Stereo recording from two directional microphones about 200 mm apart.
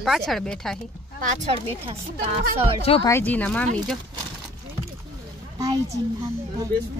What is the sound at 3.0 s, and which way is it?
Speech, 10° left (ahead or behind).